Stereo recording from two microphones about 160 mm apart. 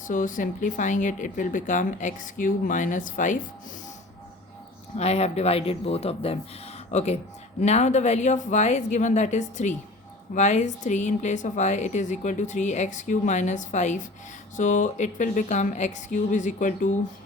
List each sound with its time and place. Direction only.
0.1 s a woman's voice: 55° left (ahead or behind)
4.9 s a woman's voice: 40° left (ahead or behind)